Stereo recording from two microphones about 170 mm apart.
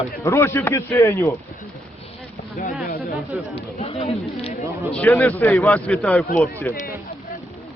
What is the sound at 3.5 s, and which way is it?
Speech, 35° left (ahead or behind).